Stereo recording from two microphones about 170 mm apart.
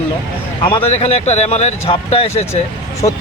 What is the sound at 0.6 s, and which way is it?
Speech, 35° left (ahead or behind).